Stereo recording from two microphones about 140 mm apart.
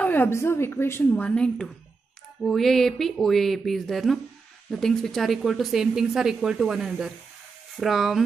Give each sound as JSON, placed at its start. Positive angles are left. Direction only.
{"t": 0.0, "sound": "a woman's voice", "side_deg": 15}